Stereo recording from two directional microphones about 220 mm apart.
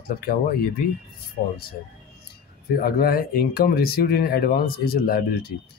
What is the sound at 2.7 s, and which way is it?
Speech, 40° left (ahead or behind).